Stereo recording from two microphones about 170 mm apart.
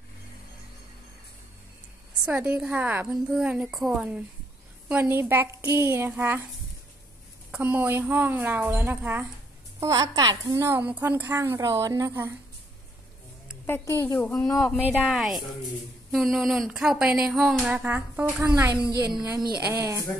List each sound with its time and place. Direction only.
2.2 s a woman's voice: 10° right (ahead or behind)
7.5 s a woman's voice: 10° right (ahead or behind)
13.7 s a woman's voice: 15° left (ahead or behind); by 20.1 s 20° right (ahead or behind)